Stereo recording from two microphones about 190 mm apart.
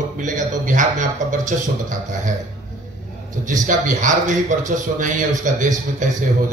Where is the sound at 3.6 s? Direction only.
40° right (ahead or behind).